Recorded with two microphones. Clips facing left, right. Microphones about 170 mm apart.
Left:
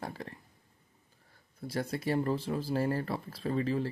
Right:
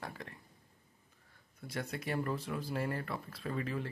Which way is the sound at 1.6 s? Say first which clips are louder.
Left 6 dB; 30° left (ahead or behind).